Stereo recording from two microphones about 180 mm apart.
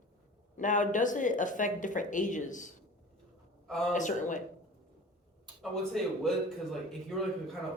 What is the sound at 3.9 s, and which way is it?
Speech, 45° left (ahead or behind).